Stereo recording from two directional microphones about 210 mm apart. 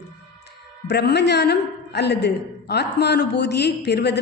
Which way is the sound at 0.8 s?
50° left (ahead or behind).